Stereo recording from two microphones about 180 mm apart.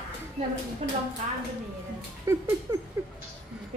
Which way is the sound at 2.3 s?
15° right (ahead or behind).